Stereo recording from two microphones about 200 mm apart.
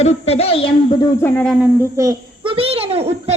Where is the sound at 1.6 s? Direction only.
15° right (ahead or behind).